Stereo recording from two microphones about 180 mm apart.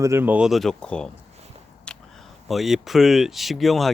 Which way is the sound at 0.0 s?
15° right (ahead or behind).